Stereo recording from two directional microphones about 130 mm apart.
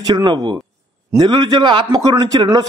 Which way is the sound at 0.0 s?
35° right (ahead or behind).